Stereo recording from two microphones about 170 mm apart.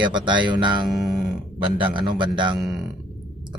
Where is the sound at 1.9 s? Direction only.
25° right (ahead or behind).